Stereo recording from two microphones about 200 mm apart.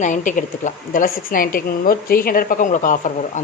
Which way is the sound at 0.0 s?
40° left (ahead or behind).